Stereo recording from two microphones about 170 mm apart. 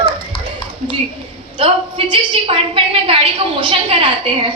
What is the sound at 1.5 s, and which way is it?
A woman's voice, 30° right (ahead or behind).